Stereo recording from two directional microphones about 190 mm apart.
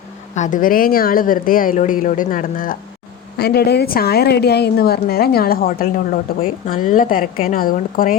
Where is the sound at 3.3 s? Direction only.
55° left (ahead or behind).